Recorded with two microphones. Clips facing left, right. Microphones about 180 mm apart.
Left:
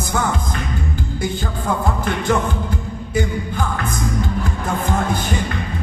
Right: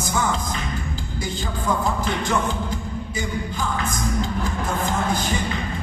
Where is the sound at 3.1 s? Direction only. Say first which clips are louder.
Left 8 dB; 55° left (ahead or behind).